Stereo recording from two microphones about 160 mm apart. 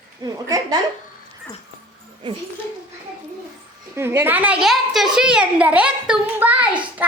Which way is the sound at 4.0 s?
15° right (ahead or behind).